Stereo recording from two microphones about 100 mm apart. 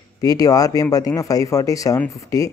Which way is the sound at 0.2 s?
40° left (ahead or behind).